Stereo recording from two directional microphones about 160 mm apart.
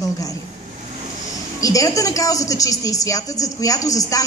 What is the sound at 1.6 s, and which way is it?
A woman's voice, 20° left (ahead or behind).